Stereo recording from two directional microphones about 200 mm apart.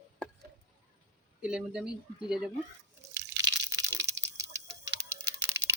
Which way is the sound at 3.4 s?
15° right (ahead or behind).